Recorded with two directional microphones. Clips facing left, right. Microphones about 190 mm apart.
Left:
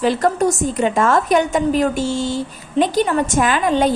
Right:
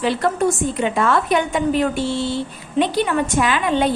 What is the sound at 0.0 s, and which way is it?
A woman's voice, 40° left (ahead or behind).